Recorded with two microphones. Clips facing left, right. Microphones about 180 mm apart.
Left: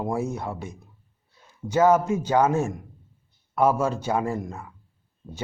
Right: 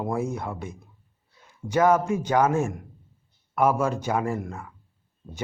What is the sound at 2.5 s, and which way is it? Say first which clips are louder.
Speech: even; 15° right (ahead or behind).